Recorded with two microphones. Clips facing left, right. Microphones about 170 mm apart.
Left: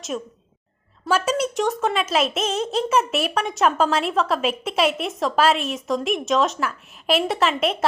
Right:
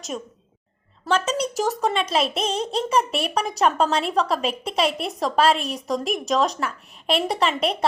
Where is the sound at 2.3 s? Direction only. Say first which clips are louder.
Left 1 dB; 35° right (ahead or behind).